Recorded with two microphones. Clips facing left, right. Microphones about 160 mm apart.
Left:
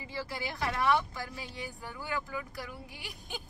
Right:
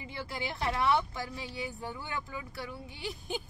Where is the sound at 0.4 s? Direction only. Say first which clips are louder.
Right 2 dB; 25° right (ahead or behind).